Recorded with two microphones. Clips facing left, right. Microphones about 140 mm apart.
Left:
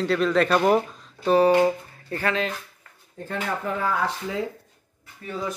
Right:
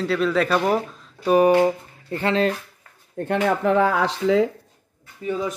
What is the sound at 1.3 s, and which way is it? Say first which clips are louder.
Speech: right 2 dB; 10° right (ahead or behind).